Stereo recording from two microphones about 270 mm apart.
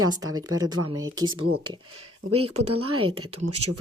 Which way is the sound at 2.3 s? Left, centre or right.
Right.